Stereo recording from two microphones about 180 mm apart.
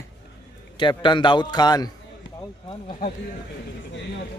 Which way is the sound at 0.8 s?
25° left (ahead or behind).